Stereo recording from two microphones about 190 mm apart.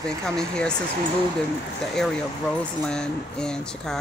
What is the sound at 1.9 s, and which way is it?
Speech, 5° left (ahead or behind).